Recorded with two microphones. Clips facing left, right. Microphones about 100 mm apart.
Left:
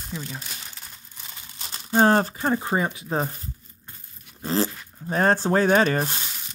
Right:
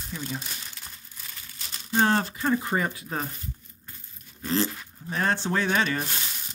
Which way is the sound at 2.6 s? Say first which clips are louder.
Left 3 dB; 20° left (ahead or behind).